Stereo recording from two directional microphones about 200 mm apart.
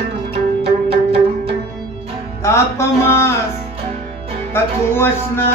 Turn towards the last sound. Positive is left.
turn(degrees=10)  # may be behind; listen again after turning